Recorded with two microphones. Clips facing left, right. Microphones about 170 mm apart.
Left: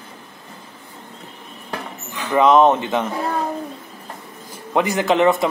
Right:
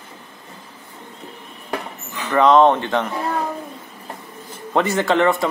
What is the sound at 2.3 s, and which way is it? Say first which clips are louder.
Speech: even; 15° left (ahead or behind).